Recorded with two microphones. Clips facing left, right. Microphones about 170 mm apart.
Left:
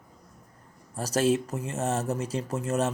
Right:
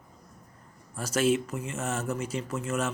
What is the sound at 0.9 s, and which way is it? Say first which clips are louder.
Speech: left 1 dB; 35° left (ahead or behind).